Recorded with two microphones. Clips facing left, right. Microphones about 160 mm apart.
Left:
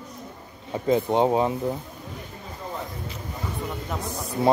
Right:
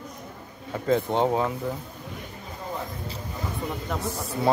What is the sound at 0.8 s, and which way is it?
Speech, 15° left (ahead or behind).